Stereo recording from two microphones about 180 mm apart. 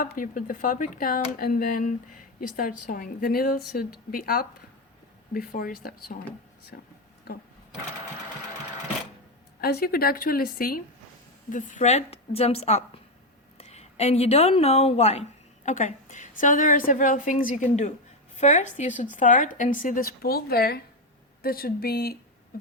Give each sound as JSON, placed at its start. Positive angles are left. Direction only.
{"t": 0.0, "sound": "a woman's voice", "side_deg": 50}
{"t": 9.6, "sound": "a woman's voice", "side_deg": 60}